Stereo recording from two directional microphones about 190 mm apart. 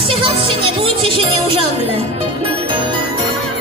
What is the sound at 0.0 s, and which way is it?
Music, 30° right (ahead or behind).